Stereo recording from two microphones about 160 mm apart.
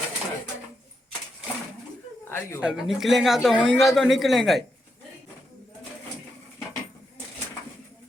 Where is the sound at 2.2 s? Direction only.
15° left (ahead or behind).